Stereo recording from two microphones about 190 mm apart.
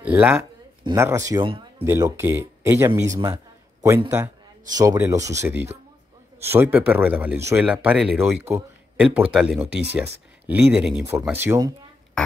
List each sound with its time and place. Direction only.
0.0 s speech: 5° right (ahead or behind); by 1.9 s 25° right (ahead or behind)
1.9 s speech: 15° right (ahead or behind)